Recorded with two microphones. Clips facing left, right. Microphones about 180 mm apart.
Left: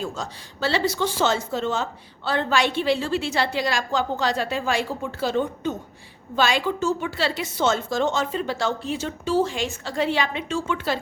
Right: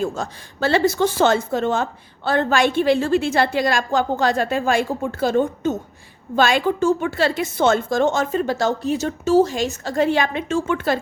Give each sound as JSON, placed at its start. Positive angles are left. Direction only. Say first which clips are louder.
{"t": 0.0, "sound": "a woman's voice", "louder": "right 6 dB", "side_deg": -50}